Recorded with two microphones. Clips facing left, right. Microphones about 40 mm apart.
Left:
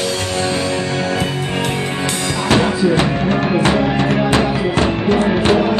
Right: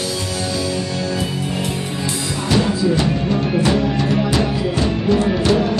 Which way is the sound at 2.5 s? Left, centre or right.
Left.